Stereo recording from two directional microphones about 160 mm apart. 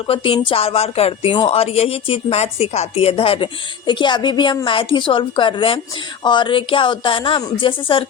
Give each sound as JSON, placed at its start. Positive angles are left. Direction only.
{"t": 0.1, "sound": "speech", "side_deg": 35}